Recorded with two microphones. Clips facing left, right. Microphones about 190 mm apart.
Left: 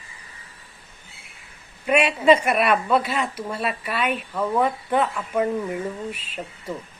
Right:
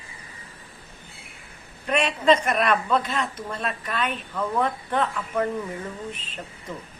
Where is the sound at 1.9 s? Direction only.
10° left (ahead or behind).